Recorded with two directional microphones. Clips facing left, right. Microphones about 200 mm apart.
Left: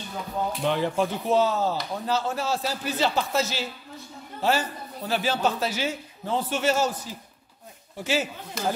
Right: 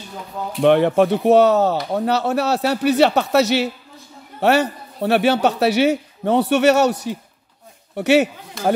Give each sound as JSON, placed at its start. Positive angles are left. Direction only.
{"t": 0.6, "sound": "speech", "side_deg": -65}